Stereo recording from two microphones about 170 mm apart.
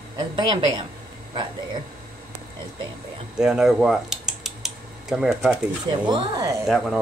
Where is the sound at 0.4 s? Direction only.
25° right (ahead or behind).